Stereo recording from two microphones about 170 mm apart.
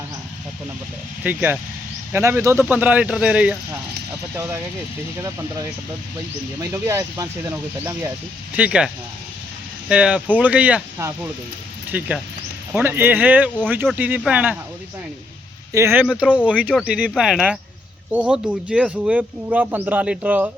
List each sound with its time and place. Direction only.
1.2 s speech: 10° right (ahead or behind)
6.6 s speech: 15° right (ahead or behind)
8.5 s speech: 5° right (ahead or behind)
9.9 s speech: 5° right (ahead or behind)
15.7 s speech: 15° right (ahead or behind)